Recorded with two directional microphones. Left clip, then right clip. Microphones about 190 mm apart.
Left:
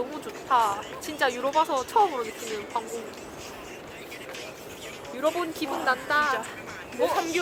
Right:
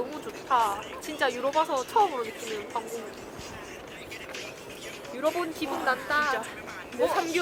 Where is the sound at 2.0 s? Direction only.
5° right (ahead or behind).